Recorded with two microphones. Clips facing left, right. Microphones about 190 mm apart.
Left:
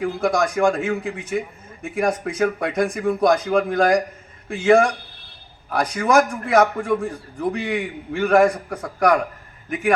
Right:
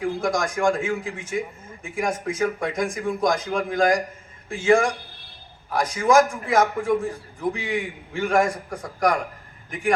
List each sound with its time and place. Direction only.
0.0 s a man's voice: 65° left (ahead or behind)